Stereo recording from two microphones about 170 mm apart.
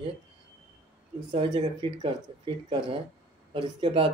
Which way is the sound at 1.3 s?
30° right (ahead or behind).